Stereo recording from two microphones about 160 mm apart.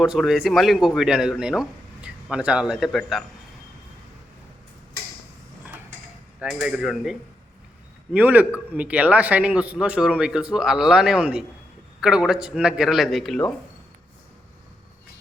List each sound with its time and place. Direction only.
0.0 s speech: 5° right (ahead or behind)
6.4 s a man's voice: 5° right (ahead or behind)